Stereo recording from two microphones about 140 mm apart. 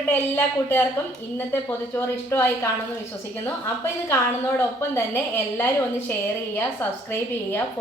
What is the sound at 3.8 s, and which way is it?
A woman's voice, 20° left (ahead or behind).